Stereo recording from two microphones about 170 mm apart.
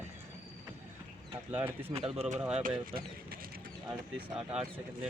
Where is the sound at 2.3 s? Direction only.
5° right (ahead or behind).